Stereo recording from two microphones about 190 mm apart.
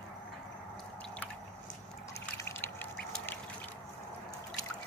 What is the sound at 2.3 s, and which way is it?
Duck, 15° left (ahead or behind).